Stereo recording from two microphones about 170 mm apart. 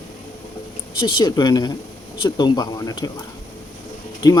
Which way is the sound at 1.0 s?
25° left (ahead or behind).